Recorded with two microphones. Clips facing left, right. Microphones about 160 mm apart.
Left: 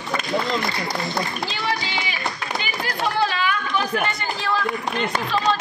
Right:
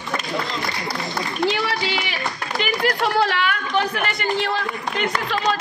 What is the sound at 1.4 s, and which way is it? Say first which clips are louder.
Speech: right 5 dB; 65° right (ahead or behind).